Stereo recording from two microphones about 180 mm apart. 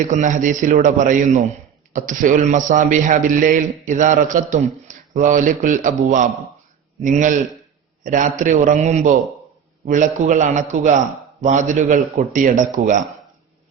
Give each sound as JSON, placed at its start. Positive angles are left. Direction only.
{"t": 0.1, "sound": "a man's voice", "side_deg": -45}